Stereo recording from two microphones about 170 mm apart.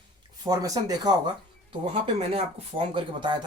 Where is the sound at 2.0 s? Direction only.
35° right (ahead or behind).